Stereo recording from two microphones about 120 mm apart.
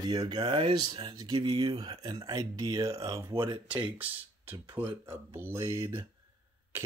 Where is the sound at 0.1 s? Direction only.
35° right (ahead or behind).